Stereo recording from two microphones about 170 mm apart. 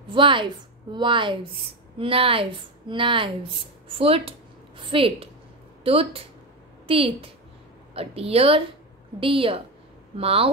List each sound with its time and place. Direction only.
0.1 s a woman's voice: 30° right (ahead or behind)